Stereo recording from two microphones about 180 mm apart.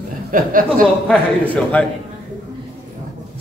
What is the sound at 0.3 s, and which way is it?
Speech, 50° right (ahead or behind).